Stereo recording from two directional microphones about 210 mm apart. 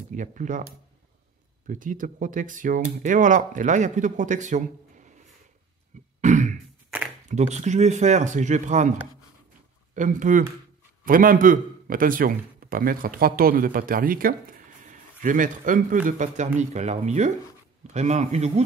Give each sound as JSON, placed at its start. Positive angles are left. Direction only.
{"t": 0.1, "sound": "a man's voice", "side_deg": -40}
{"t": 1.7, "sound": "a man's voice", "side_deg": -40}
{"t": 6.2, "sound": "throat clearing", "side_deg": -35}
{"t": 7.2, "sound": "a man's voice", "side_deg": -35}
{"t": 9.9, "sound": "a man's voice", "side_deg": -40}